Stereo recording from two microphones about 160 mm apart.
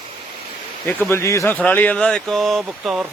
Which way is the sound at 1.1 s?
20° left (ahead or behind).